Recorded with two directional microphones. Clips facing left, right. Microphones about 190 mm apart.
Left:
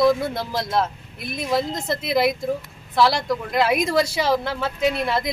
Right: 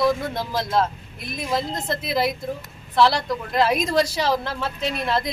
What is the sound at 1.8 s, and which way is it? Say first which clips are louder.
Speech: left 3 dB; 10° left (ahead or behind).